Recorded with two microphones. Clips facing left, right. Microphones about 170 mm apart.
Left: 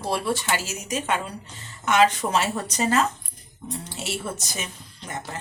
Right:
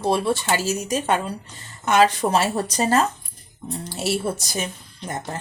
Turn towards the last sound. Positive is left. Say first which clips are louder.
# right 6 dB
turn(degrees=-35)  # may be behind; listen again after turning